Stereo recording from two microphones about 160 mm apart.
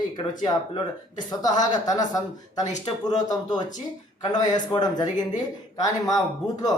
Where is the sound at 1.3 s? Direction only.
25° left (ahead or behind).